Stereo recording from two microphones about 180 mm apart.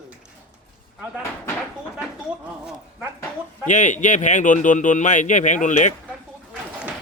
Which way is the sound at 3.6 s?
45° left (ahead or behind).